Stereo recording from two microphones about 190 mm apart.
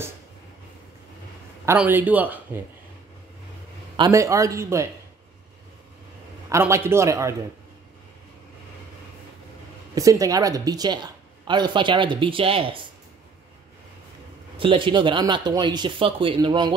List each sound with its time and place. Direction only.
1.7 s a man's voice: 10° right (ahead or behind)
3.9 s a man's voice: 20° right (ahead or behind)
6.5 s a man's voice: 15° right (ahead or behind)
9.9 s a woman's voice: 20° right (ahead or behind)
14.6 s a woman's voice: 25° right (ahead or behind)